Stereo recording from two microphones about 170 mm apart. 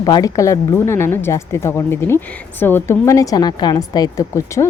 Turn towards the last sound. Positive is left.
turn(degrees=20)  # may be behind; listen again after turning